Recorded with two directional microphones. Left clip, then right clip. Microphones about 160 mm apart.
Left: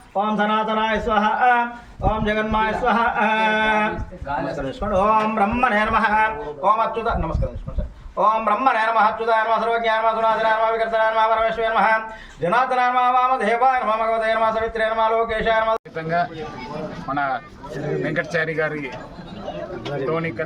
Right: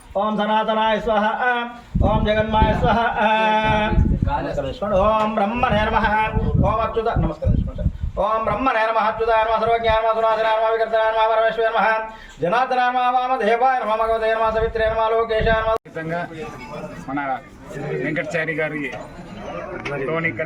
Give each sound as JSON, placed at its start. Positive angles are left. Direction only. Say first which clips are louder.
{"t": 0.2, "sound": "a man's voice", "louder": "even", "side_deg": -5}
{"t": 8.2, "sound": "a man's voice", "louder": "left 2 dB", "side_deg": -10}
{"t": 16.0, "sound": "a man's voice", "louder": "left 4 dB", "side_deg": 10}
{"t": 20.1, "sound": "a man's voice", "louder": "right 2 dB", "side_deg": 15}